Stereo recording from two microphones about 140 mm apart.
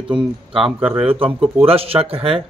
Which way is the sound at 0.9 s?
40° right (ahead or behind).